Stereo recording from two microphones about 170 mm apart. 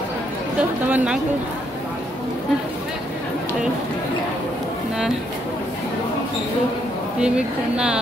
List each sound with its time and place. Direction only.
0.6 s speech: 10° right (ahead or behind)
7.2 s speech: 5° right (ahead or behind)